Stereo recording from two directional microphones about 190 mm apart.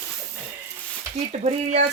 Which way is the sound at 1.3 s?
35° right (ahead or behind).